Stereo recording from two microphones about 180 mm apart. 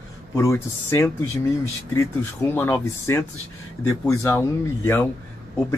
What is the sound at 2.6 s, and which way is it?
Speech, 15° left (ahead or behind).